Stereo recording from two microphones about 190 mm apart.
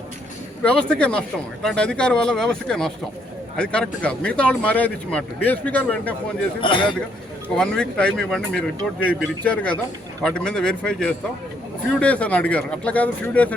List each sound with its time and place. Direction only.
0.6 s speech: 5° left (ahead or behind)
6.6 s a man's voice: 25° left (ahead or behind)
7.5 s speech: 5° left (ahead or behind)